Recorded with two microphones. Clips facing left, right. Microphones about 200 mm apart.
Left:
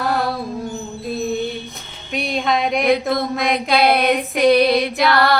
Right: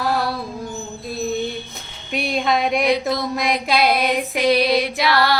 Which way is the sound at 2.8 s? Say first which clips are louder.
Left 2 dB; 55° left (ahead or behind).